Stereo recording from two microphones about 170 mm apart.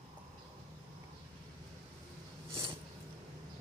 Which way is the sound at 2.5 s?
30° right (ahead or behind).